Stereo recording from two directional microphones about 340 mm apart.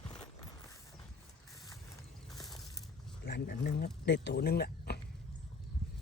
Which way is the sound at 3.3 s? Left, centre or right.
Left.